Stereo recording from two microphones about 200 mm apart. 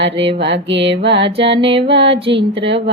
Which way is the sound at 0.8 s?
30° right (ahead or behind).